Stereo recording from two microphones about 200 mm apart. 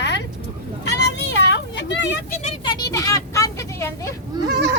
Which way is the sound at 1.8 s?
60° left (ahead or behind).